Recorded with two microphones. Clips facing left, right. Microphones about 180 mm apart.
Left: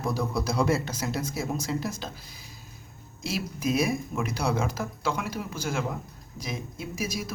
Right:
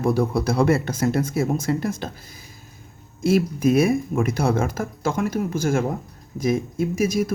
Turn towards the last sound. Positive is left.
turn(degrees=-50)  # may be behind; listen again after turning